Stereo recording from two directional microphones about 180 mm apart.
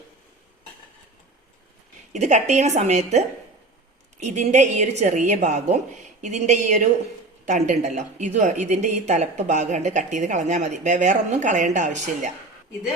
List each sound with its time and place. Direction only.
2.1 s speech: 40° right (ahead or behind)